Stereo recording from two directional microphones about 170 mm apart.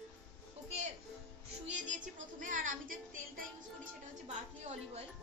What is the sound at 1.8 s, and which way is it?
Music, 50° right (ahead or behind).